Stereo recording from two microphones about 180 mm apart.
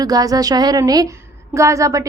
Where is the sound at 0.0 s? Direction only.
20° right (ahead or behind).